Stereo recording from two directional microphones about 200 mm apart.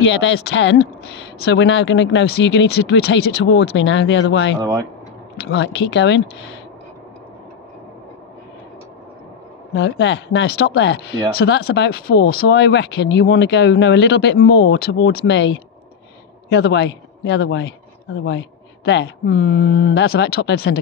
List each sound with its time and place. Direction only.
0.0 s speech: 65° left (ahead or behind)
4.6 s speech: 15° right (ahead or behind)
5.5 s speech: 60° left (ahead or behind)
9.8 s speech: 65° left (ahead or behind)